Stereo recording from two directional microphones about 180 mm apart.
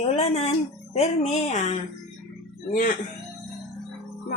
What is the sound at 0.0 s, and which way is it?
A woman's voice, 35° left (ahead or behind).